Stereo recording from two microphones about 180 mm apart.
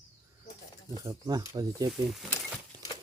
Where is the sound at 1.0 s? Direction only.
20° right (ahead or behind).